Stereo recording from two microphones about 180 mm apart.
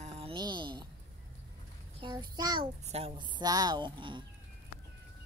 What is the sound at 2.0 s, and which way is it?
Speech, 25° right (ahead or behind).